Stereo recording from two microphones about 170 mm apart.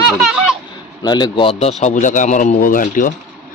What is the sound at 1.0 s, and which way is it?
Speech, 25° left (ahead or behind).